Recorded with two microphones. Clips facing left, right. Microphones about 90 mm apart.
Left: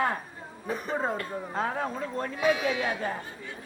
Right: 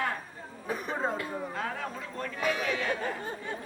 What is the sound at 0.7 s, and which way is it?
Speech, centre (ahead or behind).